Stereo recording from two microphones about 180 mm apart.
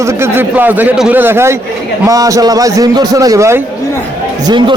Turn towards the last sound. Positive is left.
turn(degrees=-25)  # may be behind; listen again after turning